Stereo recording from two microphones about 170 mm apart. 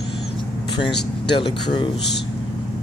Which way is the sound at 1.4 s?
25° left (ahead or behind).